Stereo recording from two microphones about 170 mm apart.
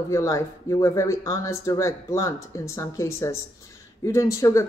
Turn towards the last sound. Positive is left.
turn(degrees=20)  # may be behind; listen again after turning